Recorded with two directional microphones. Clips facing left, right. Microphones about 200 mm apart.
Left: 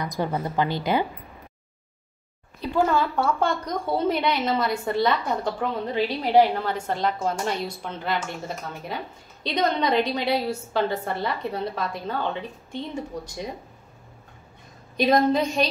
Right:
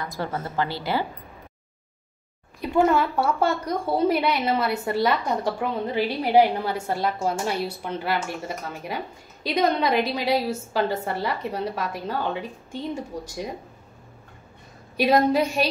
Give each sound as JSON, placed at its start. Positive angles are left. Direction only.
{"t": 0.0, "sound": "a woman's voice", "side_deg": 15}
{"t": 2.6, "sound": "a woman's voice", "side_deg": -20}
{"t": 3.2, "sound": "a woman's voice", "side_deg": -5}
{"t": 15.0, "sound": "a woman's voice", "side_deg": -10}